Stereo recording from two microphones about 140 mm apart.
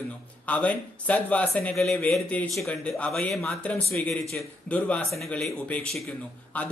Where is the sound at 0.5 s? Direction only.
10° left (ahead or behind).